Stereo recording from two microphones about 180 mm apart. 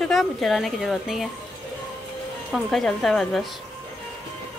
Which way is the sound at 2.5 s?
Centre (ahead or behind).